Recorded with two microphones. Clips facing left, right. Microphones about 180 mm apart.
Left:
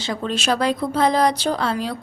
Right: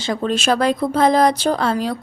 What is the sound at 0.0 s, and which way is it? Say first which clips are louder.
A woman's voice: right 4 dB; 45° right (ahead or behind).